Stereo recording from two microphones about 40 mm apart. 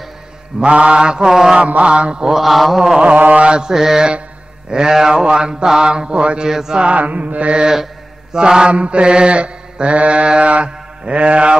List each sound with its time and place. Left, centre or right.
0.6 s mantra: right
1.6 s mantra: right
2.2 s mantra: centre
3.2 s mantra: right
3.7 s mantra: centre
6.5 s mantra: centre
6.8 s mantra: right
7.5 s mantra: centre; by 11.5 s right